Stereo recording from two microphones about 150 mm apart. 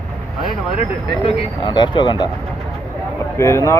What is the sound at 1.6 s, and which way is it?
Speech, 30° left (ahead or behind).